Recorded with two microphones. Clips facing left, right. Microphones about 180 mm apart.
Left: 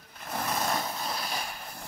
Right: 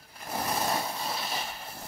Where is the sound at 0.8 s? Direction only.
5° right (ahead or behind).